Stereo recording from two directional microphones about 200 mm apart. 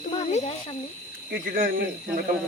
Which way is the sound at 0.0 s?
35° left (ahead or behind).